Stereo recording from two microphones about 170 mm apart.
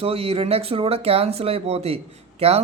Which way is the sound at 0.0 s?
35° right (ahead or behind).